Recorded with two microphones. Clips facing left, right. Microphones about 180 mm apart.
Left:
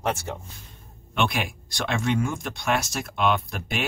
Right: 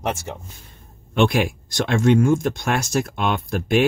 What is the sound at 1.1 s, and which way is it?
Speech, 50° right (ahead or behind).